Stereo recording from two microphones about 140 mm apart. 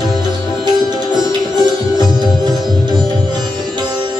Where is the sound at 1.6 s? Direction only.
30° right (ahead or behind).